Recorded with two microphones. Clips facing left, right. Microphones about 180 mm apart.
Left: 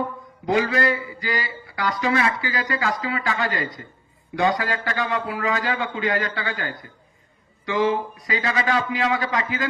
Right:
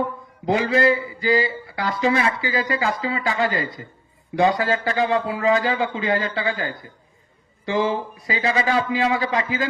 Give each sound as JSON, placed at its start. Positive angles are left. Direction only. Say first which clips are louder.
{"t": 0.4, "sound": "a man's voice", "louder": "right 3 dB", "side_deg": -25}